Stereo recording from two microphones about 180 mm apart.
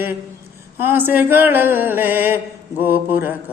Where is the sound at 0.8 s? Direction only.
10° right (ahead or behind).